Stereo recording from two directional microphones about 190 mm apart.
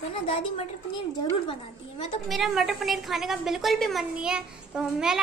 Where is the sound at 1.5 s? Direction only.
25° left (ahead or behind).